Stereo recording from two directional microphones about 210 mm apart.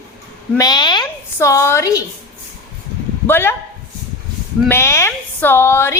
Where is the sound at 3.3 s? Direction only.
10° left (ahead or behind).